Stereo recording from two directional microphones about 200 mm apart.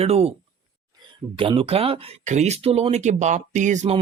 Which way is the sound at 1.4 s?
25° right (ahead or behind).